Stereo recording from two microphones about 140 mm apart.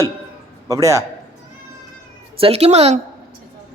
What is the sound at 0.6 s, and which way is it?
Speech, 25° right (ahead or behind).